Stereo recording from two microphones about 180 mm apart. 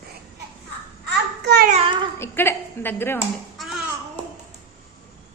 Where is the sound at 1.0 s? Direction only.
70° right (ahead or behind).